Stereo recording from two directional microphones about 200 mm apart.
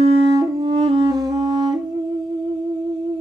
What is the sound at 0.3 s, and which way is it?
Music, 20° right (ahead or behind).